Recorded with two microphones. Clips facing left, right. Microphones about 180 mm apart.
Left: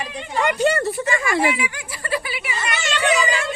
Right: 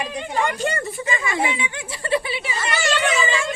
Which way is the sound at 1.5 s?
25° right (ahead or behind).